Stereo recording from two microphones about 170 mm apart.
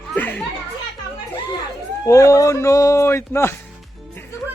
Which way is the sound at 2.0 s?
20° left (ahead or behind).